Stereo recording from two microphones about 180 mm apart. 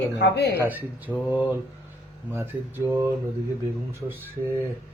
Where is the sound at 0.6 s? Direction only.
10° right (ahead or behind).